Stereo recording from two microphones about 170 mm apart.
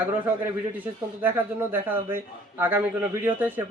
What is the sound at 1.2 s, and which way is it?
Speech, 10° right (ahead or behind).